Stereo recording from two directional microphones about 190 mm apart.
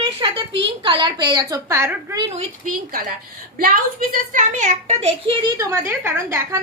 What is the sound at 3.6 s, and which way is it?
A child's voice, 50° right (ahead or behind).